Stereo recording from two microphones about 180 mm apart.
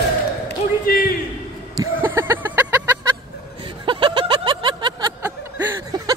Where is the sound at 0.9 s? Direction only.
55° left (ahead or behind).